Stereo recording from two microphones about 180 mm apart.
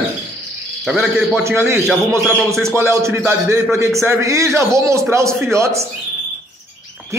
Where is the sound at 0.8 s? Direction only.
Centre (ahead or behind).